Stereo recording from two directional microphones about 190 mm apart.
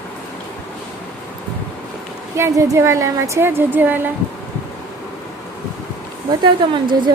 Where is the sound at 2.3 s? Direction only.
15° right (ahead or behind).